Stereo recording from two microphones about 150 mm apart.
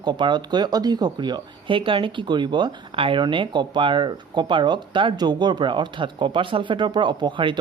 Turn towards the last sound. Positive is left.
turn(degrees=-30)  # may be behind; listen again after turning